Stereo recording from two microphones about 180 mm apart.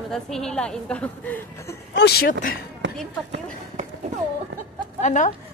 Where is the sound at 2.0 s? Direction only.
60° left (ahead or behind).